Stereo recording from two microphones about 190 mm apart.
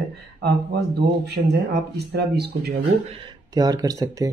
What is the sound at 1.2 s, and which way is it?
Speech, 60° right (ahead or behind).